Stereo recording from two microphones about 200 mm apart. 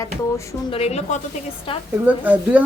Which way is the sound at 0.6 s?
30° left (ahead or behind).